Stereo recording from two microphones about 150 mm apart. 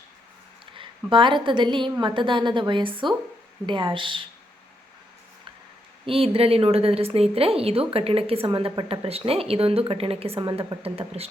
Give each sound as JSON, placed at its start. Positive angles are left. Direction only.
{"t": 0.6, "sound": "a woman's voice", "side_deg": -35}
{"t": 6.1, "sound": "a woman's voice", "side_deg": -40}